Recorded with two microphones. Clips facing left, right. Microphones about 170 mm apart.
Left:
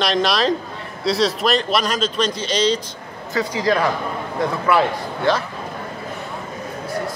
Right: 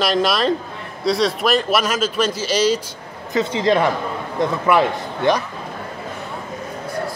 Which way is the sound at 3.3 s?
25° right (ahead or behind).